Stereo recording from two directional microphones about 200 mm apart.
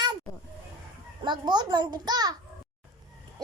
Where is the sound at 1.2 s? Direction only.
20° right (ahead or behind).